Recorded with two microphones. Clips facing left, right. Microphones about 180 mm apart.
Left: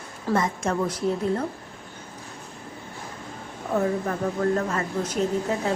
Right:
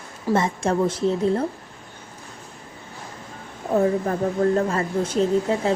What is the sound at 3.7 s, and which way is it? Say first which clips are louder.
Speech: right 4 dB; 30° right (ahead or behind).